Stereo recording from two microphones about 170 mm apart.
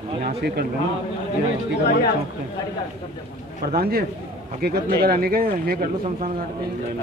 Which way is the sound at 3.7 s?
65° right (ahead or behind).